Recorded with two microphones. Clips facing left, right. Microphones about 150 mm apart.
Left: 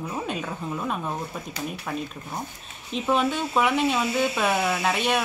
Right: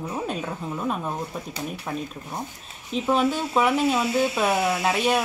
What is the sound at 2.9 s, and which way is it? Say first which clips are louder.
A woman's voice: right 1 dB; centre (ahead or behind).